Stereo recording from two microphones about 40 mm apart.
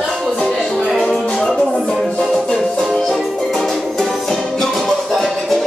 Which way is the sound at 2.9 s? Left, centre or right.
Centre.